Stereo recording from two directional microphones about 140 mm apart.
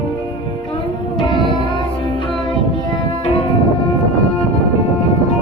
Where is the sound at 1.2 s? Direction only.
35° left (ahead or behind).